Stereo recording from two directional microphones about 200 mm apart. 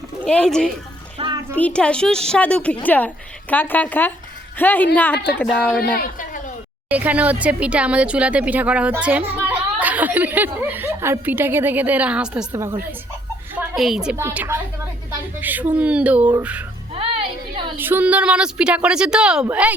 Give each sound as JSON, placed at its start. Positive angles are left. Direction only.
{"t": 0.3, "sound": "a woman's voice", "side_deg": 5}
{"t": 1.2, "sound": "a sound", "side_deg": -25}
{"t": 1.5, "sound": "a woman's voice", "side_deg": 5}
{"t": 5.8, "sound": "a woman's voice", "side_deg": 45}
{"t": 6.9, "sound": "speech", "side_deg": -5}
{"t": 13.6, "sound": "speech", "side_deg": 0}
{"t": 16.9, "sound": "a sound", "side_deg": -25}
{"t": 17.7, "sound": "a woman's voice", "side_deg": -10}